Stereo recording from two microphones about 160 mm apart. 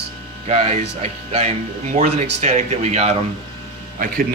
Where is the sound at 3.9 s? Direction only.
60° right (ahead or behind).